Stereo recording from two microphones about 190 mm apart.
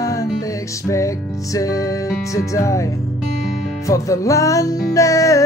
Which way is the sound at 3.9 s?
15° left (ahead or behind).